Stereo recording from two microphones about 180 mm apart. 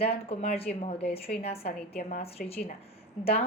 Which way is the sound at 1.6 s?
60° left (ahead or behind).